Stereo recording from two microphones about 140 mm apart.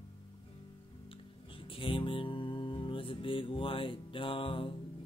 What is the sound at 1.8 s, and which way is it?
Music, 40° left (ahead or behind).